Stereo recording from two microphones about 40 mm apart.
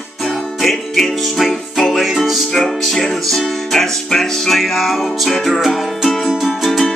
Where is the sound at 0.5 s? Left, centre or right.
Centre.